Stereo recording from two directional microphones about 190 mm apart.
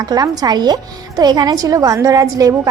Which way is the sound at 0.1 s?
20° right (ahead or behind).